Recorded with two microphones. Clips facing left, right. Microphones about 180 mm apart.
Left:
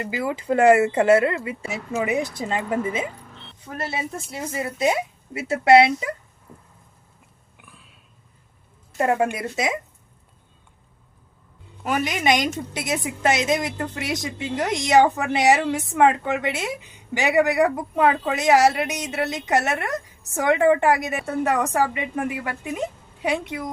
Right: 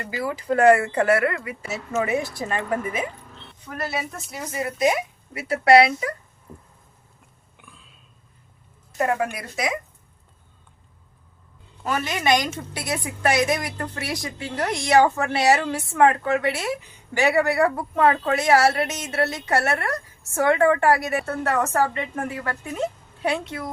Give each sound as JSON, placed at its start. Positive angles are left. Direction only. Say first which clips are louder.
{"t": 0.0, "sound": "speech", "louder": "left 2 dB", "side_deg": 20}
{"t": 9.0, "sound": "speech", "louder": "left 3 dB", "side_deg": 25}
{"t": 11.8, "sound": "a woman's voice", "louder": "left 2 dB", "side_deg": 15}